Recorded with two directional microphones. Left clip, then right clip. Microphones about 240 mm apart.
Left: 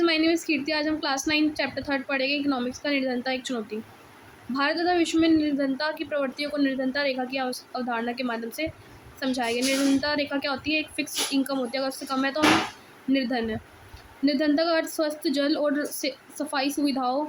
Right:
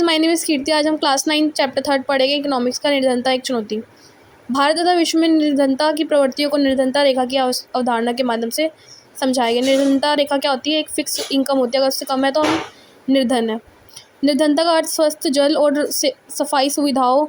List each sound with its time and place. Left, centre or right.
0.0 s a woman's voice: right